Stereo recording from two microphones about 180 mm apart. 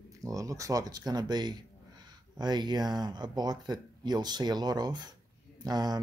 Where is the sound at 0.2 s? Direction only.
20° right (ahead or behind).